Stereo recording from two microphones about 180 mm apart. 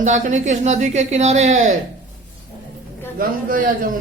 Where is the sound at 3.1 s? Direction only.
50° right (ahead or behind).